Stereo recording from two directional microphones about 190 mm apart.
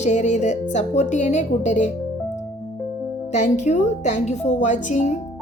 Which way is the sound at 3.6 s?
35° left (ahead or behind).